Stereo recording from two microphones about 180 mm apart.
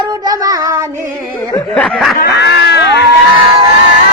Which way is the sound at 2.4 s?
65° left (ahead or behind).